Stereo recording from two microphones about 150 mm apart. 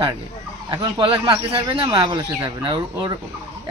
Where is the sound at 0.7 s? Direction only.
30° right (ahead or behind).